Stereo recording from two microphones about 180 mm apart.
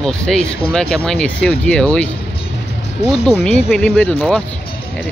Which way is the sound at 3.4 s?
5° left (ahead or behind).